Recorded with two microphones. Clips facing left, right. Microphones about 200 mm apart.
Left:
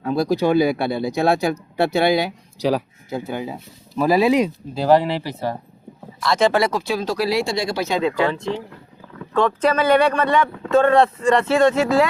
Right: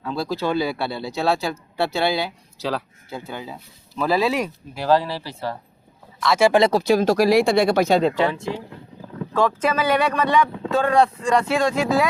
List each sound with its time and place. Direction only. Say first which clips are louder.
0.0 s speech: left 6 dB; 15° left (ahead or behind)
6.1 s speech: right 1 dB; 5° right (ahead or behind)
6.6 s speech: right 4 dB; 35° right (ahead or behind); by 7.9 s 60° right (ahead or behind)
8.1 s speech: left 1 dB; 15° right (ahead or behind); by 11.9 s centre (ahead or behind)